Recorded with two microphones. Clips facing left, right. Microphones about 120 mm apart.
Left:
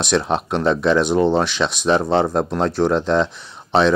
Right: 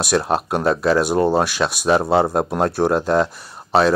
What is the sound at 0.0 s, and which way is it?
Speech, 5° right (ahead or behind).